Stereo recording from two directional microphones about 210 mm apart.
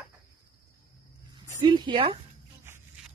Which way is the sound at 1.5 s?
20° right (ahead or behind).